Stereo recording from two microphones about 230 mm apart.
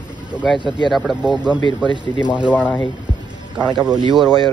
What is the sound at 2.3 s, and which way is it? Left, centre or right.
Speech, centre.